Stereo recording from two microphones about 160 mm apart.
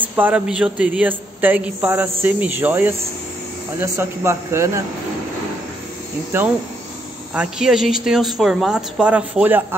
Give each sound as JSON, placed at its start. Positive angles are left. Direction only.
{"t": 0.0, "sound": "a man's voice", "side_deg": -10}
{"t": 7.3, "sound": "a woman's voice", "side_deg": -5}